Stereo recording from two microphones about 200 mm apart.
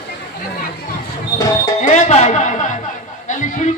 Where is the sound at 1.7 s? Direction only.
35° left (ahead or behind).